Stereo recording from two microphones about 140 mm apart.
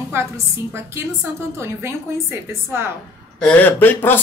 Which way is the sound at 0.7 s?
20° right (ahead or behind).